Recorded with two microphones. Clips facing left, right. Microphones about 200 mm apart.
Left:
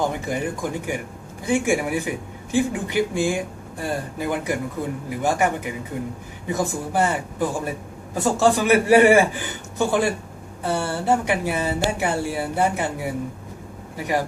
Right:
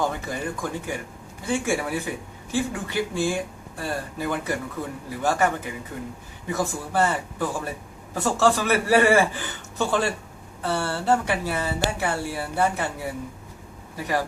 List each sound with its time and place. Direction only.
0.0 s speech: 15° left (ahead or behind)
13.9 s speech: 15° left (ahead or behind)